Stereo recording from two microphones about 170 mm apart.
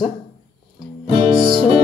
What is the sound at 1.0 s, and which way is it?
Music, 30° right (ahead or behind).